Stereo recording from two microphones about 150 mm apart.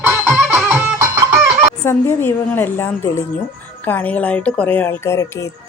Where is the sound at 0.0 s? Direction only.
10° right (ahead or behind).